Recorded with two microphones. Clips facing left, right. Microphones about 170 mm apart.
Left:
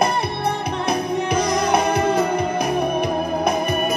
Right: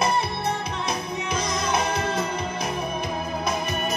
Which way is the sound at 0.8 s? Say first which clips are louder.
Left 10 dB; 60° left (ahead or behind).